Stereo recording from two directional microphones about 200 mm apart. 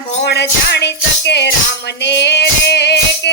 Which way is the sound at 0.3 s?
60° left (ahead or behind).